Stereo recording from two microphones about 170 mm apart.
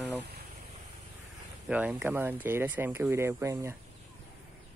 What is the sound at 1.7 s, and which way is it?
Speech, 10° right (ahead or behind).